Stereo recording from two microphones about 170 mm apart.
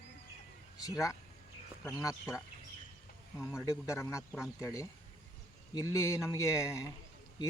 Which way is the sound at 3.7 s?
15° left (ahead or behind).